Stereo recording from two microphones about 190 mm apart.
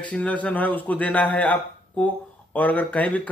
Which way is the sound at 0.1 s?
5° left (ahead or behind).